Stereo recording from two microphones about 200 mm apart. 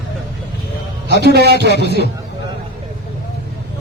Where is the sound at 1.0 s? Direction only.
55° right (ahead or behind).